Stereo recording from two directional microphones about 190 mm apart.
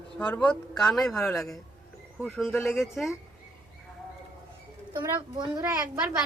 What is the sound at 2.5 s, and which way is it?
Speech, 15° left (ahead or behind).